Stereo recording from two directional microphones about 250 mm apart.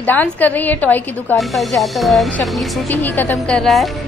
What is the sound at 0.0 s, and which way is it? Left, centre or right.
A woman's voice, centre.